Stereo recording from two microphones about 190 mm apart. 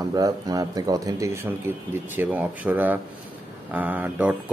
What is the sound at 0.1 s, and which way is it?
Speech, 20° right (ahead or behind).